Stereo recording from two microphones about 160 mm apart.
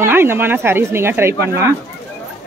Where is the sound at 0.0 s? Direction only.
15° right (ahead or behind).